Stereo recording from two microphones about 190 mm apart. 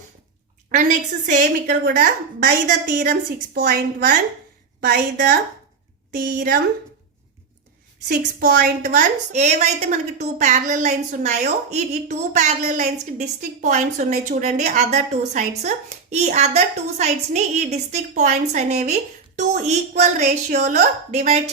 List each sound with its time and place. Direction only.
0.7 s a woman's voice: 40° right (ahead or behind)
1.6 s a woman's voice: 55° right (ahead or behind)
6.1 s a woman's voice: 45° right (ahead or behind)
8.0 s a woman's voice: 55° right (ahead or behind); by 21.5 s 35° right (ahead or behind)